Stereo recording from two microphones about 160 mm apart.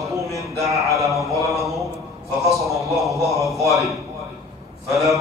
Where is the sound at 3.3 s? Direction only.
Centre (ahead or behind).